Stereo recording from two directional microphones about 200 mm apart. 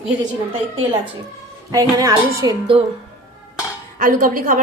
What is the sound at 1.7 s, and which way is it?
A woman's voice, 15° right (ahead or behind).